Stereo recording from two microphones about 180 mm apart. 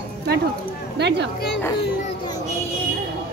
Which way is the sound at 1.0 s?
70° right (ahead or behind).